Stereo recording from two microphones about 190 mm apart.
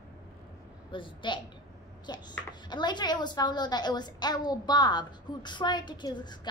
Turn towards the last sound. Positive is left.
turn(degrees=25)  # may be behind; listen again after turning